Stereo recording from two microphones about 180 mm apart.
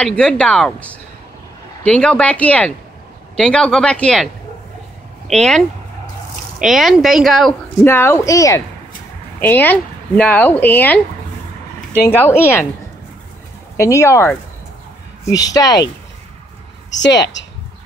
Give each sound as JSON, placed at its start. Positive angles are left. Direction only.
{"t": 0.0, "sound": "speech", "side_deg": 5}
{"t": 5.3, "sound": "speech", "side_deg": 5}
{"t": 6.6, "sound": "speech", "side_deg": 0}
{"t": 7.8, "sound": "speech", "side_deg": 15}
{"t": 12.1, "sound": "speech", "side_deg": 10}
{"t": 13.7, "sound": "speech", "side_deg": 15}
{"t": 15.3, "sound": "speech", "side_deg": 20}